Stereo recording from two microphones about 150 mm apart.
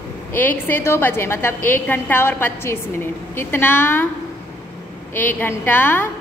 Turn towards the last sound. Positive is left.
turn(degrees=15)  # may be behind; listen again after turning